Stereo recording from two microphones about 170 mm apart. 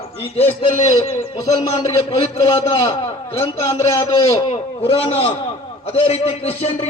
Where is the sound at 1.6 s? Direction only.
40° left (ahead or behind).